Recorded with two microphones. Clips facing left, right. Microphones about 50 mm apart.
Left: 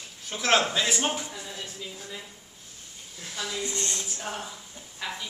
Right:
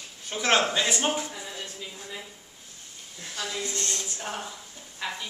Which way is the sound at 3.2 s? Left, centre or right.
Centre.